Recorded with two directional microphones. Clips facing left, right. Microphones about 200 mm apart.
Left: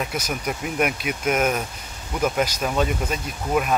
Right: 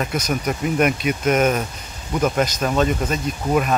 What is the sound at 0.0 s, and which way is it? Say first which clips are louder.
Speech: right 4 dB; 5° left (ahead or behind).